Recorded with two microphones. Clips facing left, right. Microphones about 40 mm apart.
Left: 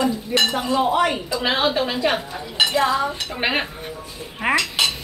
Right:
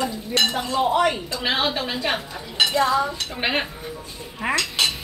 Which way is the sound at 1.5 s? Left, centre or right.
Centre.